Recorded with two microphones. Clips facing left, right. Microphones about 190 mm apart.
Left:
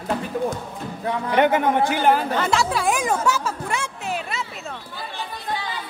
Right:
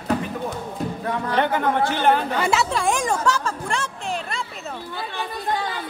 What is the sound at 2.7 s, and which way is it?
Speech, 5° left (ahead or behind).